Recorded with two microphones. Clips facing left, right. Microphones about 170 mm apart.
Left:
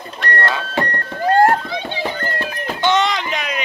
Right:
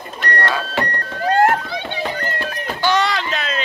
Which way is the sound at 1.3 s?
35° left (ahead or behind).